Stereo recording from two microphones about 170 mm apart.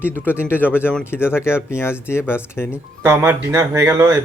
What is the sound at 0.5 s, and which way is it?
Speech, 10° left (ahead or behind).